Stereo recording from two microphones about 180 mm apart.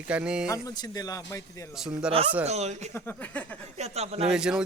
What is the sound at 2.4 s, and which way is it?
Speech, 35° right (ahead or behind).